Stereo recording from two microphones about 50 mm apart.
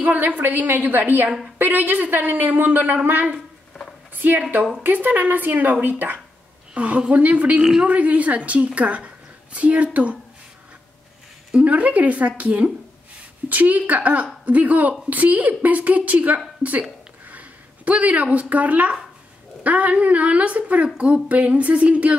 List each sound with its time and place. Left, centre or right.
0.0 s a woman's voice: right
4.1 s zipper: right
4.8 s a woman's voice: right
6.7 s a woman's voice: right
11.5 s a woman's voice: right